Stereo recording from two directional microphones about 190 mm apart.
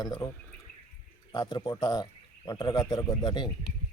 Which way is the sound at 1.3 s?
25° left (ahead or behind).